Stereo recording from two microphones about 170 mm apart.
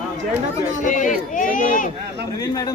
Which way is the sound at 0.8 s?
50° left (ahead or behind).